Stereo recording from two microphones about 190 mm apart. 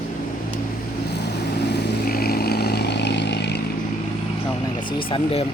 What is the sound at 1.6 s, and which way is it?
Vehicle, 50° left (ahead or behind).